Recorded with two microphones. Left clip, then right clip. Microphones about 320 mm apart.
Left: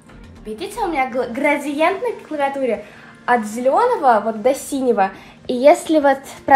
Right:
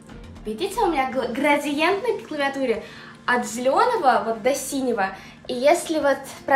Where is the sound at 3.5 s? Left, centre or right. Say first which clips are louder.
Left 2 dB; centre.